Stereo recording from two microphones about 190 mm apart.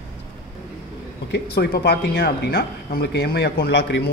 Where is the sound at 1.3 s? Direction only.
55° left (ahead or behind).